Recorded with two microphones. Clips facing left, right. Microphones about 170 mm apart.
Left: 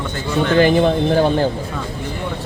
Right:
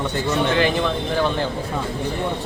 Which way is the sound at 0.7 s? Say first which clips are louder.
Left 7 dB; 45° left (ahead or behind).